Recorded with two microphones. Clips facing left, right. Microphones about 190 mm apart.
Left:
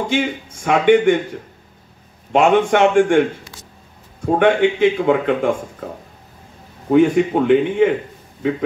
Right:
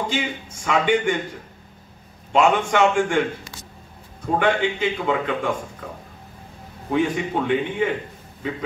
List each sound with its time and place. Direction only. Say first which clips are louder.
0.1 s a man's voice: left 6 dB; 55° left (ahead or behind)
2.3 s a man's voice: left 4 dB; 55° left (ahead or behind)
4.4 s a man's voice: left 7 dB; 55° left (ahead or behind)
6.9 s a man's voice: left 9 dB; 55° left (ahead or behind)